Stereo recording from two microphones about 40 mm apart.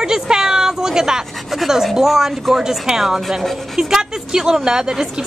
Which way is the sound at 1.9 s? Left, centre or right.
Centre.